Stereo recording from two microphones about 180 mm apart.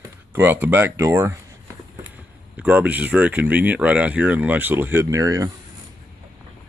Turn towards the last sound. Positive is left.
turn(degrees=-20)  # may be behind; listen again after turning